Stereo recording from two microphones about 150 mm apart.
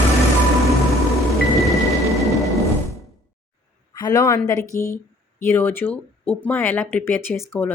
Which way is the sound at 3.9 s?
25° left (ahead or behind).